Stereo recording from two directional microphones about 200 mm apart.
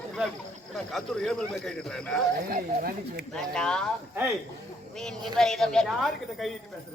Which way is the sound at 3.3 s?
5° left (ahead or behind).